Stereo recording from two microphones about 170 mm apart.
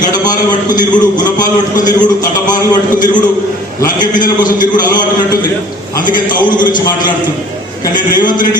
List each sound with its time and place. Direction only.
0.9 s a man's voice: 25° left (ahead or behind)
4.1 s a man's voice: 50° left (ahead or behind)
4.6 s a man's voice: 25° left (ahead or behind)
6.6 s a man's voice: 25° left (ahead or behind)